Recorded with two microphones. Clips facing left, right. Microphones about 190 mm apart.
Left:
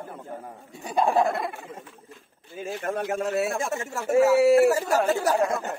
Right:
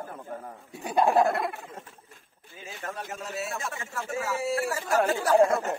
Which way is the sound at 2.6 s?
50° left (ahead or behind).